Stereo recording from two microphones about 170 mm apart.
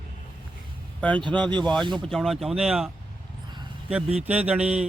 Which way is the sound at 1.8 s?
25° right (ahead or behind).